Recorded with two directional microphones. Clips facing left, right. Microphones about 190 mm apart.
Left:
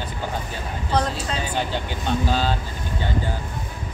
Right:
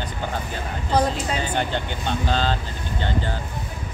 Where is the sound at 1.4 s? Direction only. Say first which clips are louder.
Right 1 dB; 5° left (ahead or behind).